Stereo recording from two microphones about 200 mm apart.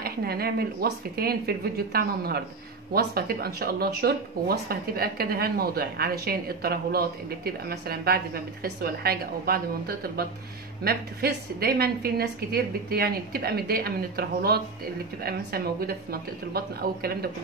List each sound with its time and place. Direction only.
0.0 s speech: 50° right (ahead or behind)